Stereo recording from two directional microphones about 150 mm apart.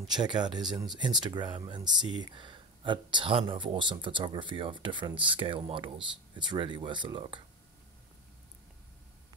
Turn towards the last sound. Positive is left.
turn(degrees=-35)  # may be behind; listen again after turning